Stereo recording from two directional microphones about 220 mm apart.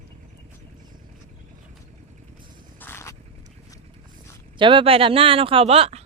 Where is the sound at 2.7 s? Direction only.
10° left (ahead or behind).